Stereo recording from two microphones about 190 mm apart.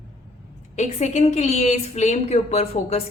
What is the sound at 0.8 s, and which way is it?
A woman's voice, 35° left (ahead or behind).